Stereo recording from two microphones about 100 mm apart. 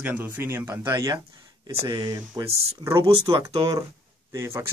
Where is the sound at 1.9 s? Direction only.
45° right (ahead or behind).